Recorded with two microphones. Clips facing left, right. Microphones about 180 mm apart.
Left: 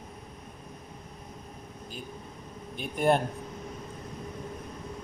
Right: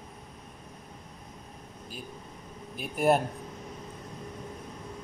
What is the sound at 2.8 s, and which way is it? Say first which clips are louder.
Speech: even; 5° right (ahead or behind).